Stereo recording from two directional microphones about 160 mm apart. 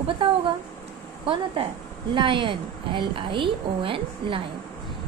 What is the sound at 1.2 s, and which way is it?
A woman's voice, 35° right (ahead or behind).